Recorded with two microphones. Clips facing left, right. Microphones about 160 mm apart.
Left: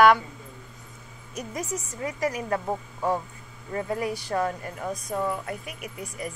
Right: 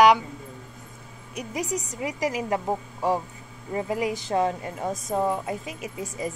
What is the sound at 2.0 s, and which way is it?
A woman's voice, 15° right (ahead or behind).